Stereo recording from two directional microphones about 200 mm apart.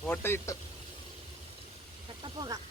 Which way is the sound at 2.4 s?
20° right (ahead or behind).